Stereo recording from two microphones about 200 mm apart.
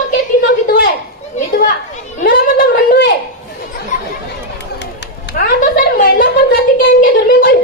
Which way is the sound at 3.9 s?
40° left (ahead or behind).